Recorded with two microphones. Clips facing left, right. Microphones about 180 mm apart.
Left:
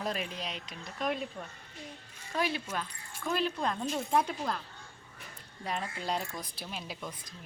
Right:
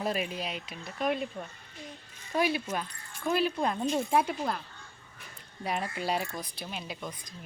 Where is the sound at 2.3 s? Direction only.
10° right (ahead or behind).